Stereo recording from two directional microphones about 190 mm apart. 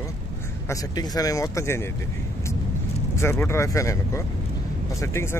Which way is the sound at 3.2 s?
15° left (ahead or behind).